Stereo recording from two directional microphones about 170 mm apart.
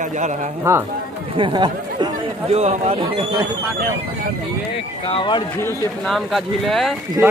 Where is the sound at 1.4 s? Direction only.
25° right (ahead or behind).